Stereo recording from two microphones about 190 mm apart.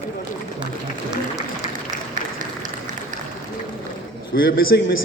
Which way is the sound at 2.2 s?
40° right (ahead or behind).